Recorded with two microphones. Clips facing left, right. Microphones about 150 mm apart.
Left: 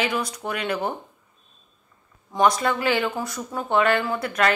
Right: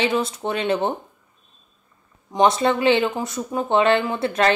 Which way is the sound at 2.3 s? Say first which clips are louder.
Right 3 dB; 25° right (ahead or behind).